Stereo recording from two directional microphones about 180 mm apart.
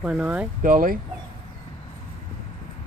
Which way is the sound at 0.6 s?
50° right (ahead or behind).